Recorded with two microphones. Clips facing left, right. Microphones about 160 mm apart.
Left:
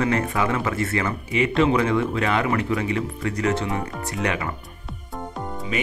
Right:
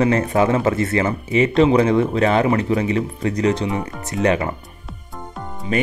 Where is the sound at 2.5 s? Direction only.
20° right (ahead or behind).